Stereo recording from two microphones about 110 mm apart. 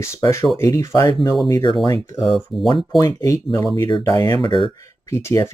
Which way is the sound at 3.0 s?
30° left (ahead or behind).